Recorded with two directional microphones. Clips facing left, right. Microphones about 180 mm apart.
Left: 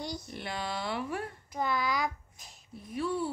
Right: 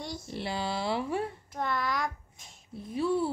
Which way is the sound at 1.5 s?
Centre (ahead or behind).